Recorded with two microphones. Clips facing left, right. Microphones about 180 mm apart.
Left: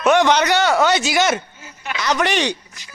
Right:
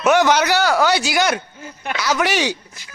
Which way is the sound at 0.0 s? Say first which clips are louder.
Even; 5° right (ahead or behind).